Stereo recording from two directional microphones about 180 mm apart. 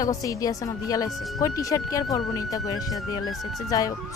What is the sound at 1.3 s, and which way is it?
A woman's voice, 20° left (ahead or behind).